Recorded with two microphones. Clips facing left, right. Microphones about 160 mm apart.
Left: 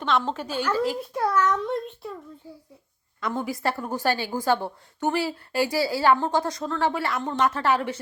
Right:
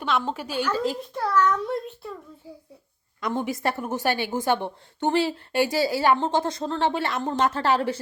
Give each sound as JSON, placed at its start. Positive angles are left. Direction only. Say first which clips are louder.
{"t": 0.0, "sound": "a woman's voice", "louder": "left 1 dB", "side_deg": -10}
{"t": 0.7, "sound": "a child's voice", "louder": "left 4 dB", "side_deg": 10}
{"t": 1.5, "sound": "a child's voice", "louder": "left 1 dB", "side_deg": -5}
{"t": 3.2, "sound": "a woman's voice", "louder": "right 2 dB", "side_deg": -20}